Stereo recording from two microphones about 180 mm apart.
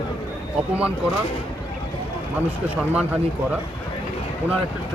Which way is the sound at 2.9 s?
10° right (ahead or behind).